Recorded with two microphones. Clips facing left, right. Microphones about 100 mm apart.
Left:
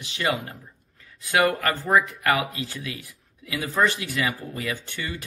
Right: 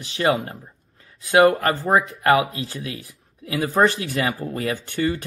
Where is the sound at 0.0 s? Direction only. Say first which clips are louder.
Right 6 dB; 35° right (ahead or behind).